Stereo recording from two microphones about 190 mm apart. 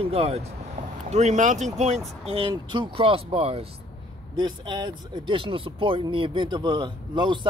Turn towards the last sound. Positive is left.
turn(degrees=-25)  # may be behind; listen again after turning